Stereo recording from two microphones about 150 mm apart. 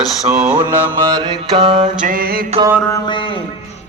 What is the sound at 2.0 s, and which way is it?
Mantra, 70° right (ahead or behind).